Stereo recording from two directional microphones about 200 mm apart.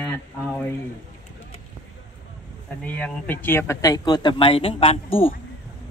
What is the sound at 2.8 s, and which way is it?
Speech, 5° left (ahead or behind).